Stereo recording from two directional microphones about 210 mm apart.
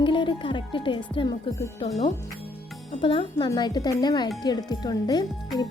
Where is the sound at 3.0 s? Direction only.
25° left (ahead or behind).